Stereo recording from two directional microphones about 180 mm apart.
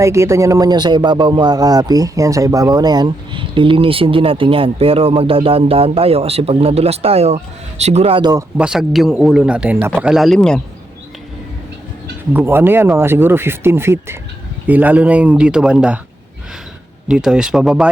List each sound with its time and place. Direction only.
0.0 s speech: 15° right (ahead or behind)
8.5 s a man's voice: 5° right (ahead or behind)
12.3 s speech: 10° right (ahead or behind)
17.1 s a man's voice: 5° right (ahead or behind)